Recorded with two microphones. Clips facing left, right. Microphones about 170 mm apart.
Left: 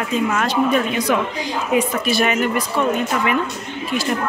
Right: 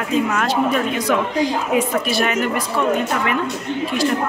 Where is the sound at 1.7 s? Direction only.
Centre (ahead or behind).